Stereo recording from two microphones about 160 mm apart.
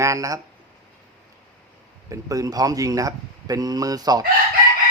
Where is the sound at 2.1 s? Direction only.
20° right (ahead or behind).